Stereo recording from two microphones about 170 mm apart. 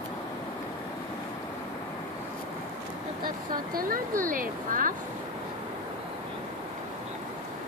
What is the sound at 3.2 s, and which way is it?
Speech, 60° right (ahead or behind).